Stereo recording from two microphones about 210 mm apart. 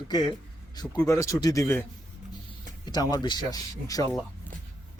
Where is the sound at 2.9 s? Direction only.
20° left (ahead or behind).